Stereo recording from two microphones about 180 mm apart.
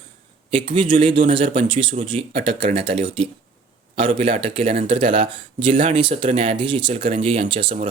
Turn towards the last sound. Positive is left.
turn(degrees=-30)  # may be behind; listen again after turning